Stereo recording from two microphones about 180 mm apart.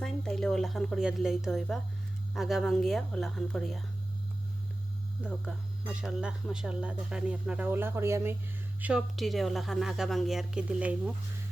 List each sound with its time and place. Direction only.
0.0 s speech: 5° left (ahead or behind)
5.9 s speech: 5° right (ahead or behind)
8.8 s speech: 5° right (ahead or behind)